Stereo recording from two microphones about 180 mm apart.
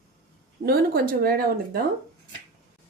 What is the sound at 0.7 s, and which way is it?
Speech, 55° right (ahead or behind).